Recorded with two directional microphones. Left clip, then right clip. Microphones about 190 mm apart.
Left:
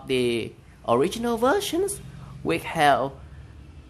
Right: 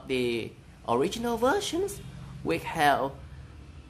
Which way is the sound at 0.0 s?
25° left (ahead or behind).